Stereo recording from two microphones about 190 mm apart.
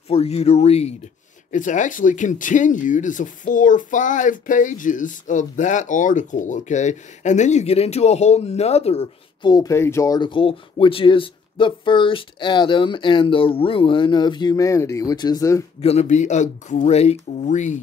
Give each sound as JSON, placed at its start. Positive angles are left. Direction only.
{"t": 0.1, "sound": "speech", "side_deg": 35}
{"t": 15.8, "sound": "speech", "side_deg": 35}